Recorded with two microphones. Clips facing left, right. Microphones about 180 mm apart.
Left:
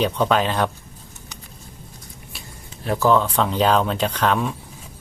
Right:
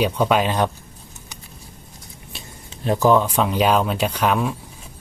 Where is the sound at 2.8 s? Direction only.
20° right (ahead or behind).